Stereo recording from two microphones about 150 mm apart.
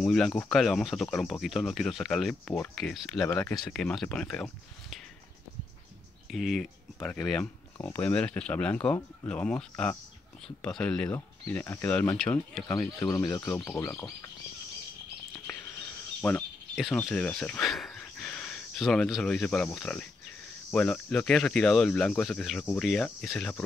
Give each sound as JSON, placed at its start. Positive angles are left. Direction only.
{"t": 0.0, "sound": "speech", "side_deg": 5}
{"t": 6.3, "sound": "speech", "side_deg": 0}
{"t": 13.0, "sound": "speech", "side_deg": 25}
{"t": 15.4, "sound": "a sound", "side_deg": 15}
{"t": 16.8, "sound": "speech", "side_deg": 5}